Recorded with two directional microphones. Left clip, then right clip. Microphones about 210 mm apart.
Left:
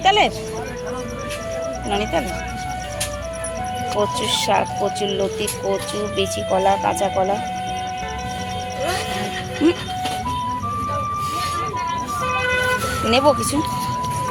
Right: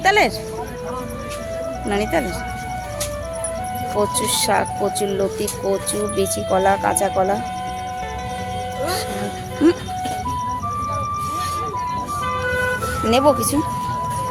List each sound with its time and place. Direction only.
0.0 s music: 20° right (ahead or behind)
1.9 s speech: 20° right (ahead or behind)
4.3 s speech: 15° right (ahead or behind)
9.6 s speech: 15° right (ahead or behind)
13.1 s speech: 15° right (ahead or behind)